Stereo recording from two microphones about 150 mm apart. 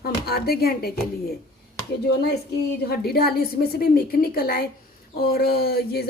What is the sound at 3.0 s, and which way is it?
A woman's voice, 90° left.